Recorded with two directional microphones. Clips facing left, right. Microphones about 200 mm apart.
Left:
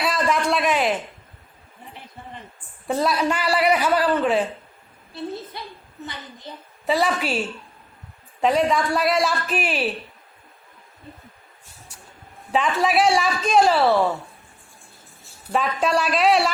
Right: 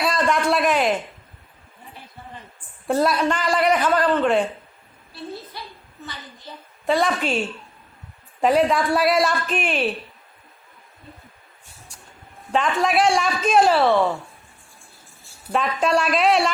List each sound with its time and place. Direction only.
0.0 s a man's voice: centre (ahead or behind)
2.8 s a man's voice: centre (ahead or behind)
5.1 s a woman's voice: 20° left (ahead or behind)
6.8 s a woman's voice: 5° left (ahead or behind)
12.5 s a woman's voice: centre (ahead or behind)
15.5 s a woman's voice: centre (ahead or behind)